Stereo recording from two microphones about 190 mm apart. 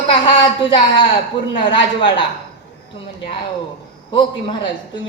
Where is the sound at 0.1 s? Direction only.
25° left (ahead or behind).